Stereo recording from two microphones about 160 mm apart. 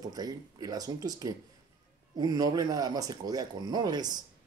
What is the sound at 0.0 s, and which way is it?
Speech, 25° right (ahead or behind).